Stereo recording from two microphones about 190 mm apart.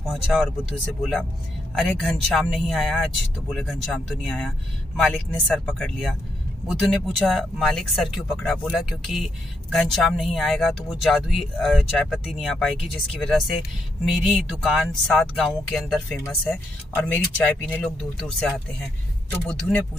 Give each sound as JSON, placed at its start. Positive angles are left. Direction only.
{"t": 0.0, "sound": "speech", "side_deg": 0}
{"t": 1.8, "sound": "speech", "side_deg": 0}
{"t": 14.6, "sound": "speech", "side_deg": 0}